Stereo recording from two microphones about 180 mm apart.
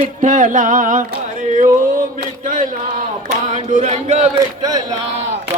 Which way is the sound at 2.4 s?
50° right (ahead or behind).